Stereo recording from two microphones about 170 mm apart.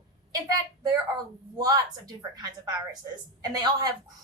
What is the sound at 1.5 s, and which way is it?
A woman's voice, 20° right (ahead or behind).